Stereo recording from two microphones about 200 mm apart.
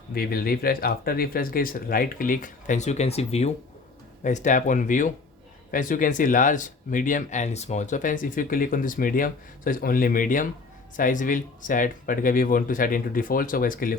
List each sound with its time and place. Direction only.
0.1 s speech: 50° left (ahead or behind)